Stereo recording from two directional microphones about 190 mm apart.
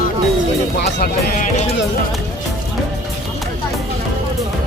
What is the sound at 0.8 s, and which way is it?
Speech, 55° left (ahead or behind).